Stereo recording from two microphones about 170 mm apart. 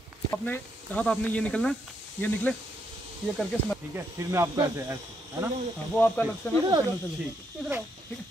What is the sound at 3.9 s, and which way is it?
Speech, 15° right (ahead or behind).